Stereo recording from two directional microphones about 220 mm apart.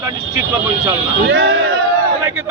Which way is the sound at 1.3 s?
60° right (ahead or behind).